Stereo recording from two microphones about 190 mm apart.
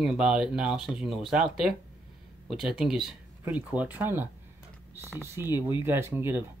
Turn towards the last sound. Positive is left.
turn(degrees=-10)  # may be behind; listen again after turning